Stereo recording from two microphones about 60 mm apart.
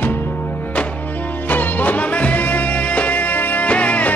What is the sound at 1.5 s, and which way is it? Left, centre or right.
Music, left.